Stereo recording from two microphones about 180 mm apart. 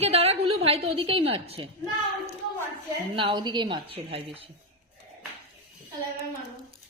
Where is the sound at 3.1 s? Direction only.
25° right (ahead or behind).